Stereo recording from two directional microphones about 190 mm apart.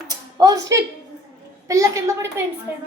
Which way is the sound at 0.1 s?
20° right (ahead or behind).